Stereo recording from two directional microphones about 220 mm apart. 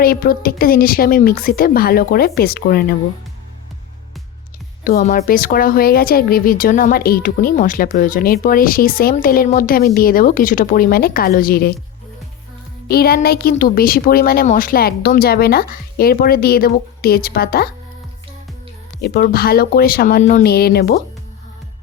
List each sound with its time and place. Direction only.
0.0 s speech: 40° left (ahead or behind)
4.8 s speech: 40° left (ahead or behind)
12.9 s speech: 45° left (ahead or behind)
19.0 s speech: 45° left (ahead or behind)